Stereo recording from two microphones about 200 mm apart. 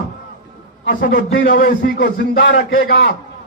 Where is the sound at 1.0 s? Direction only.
55° left (ahead or behind).